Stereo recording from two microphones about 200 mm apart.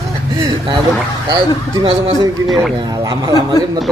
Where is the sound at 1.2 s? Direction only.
25° right (ahead or behind).